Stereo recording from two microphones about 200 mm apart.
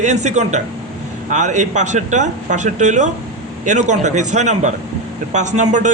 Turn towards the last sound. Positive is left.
turn(degrees=-35)  # may be behind; listen again after turning